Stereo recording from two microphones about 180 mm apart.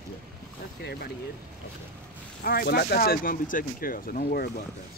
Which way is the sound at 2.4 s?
60° left (ahead or behind).